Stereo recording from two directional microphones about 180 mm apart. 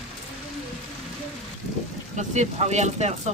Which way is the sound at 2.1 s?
40° right (ahead or behind).